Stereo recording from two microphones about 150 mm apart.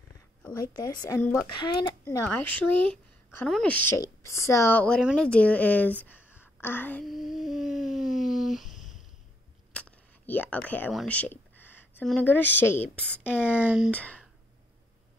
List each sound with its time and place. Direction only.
0.5 s speech: 25° left (ahead or behind)
1.2 s speech: 5° left (ahead or behind)
1.6 s speech: 30° left (ahead or behind)
2.0 s a woman's voice: 10° left (ahead or behind)
4.0 s a woman's voice: 20° left (ahead or behind)
7.1 s a sound: centre (ahead or behind)
9.8 s a sound: 10° left (ahead or behind)
12.1 s speech: 10° left (ahead or behind)
12.9 s speech: 10° right (ahead or behind)
13.8 s speech: 10° left (ahead or behind)